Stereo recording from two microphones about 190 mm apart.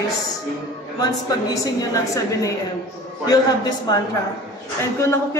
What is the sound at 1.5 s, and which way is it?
Speech, 20° left (ahead or behind).